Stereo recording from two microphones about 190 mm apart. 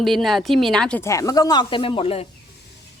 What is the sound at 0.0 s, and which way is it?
Speech, centre (ahead or behind).